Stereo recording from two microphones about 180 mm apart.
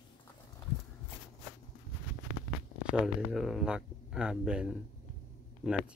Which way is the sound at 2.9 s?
5° right (ahead or behind).